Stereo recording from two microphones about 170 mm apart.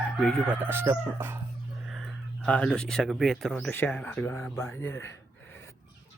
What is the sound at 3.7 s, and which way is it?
Speech, 10° left (ahead or behind).